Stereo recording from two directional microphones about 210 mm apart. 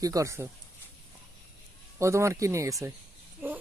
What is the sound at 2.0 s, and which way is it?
Speech, 15° right (ahead or behind).